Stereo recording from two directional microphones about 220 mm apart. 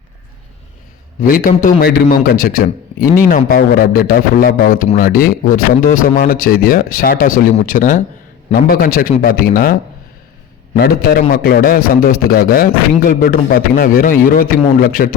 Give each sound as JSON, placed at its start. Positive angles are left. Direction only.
{"t": 1.2, "sound": "a man's voice", "side_deg": 40}
{"t": 10.8, "sound": "a man's voice", "side_deg": 45}